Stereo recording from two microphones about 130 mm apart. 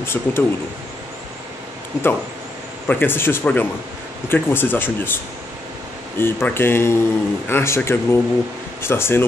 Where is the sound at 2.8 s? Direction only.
15° left (ahead or behind).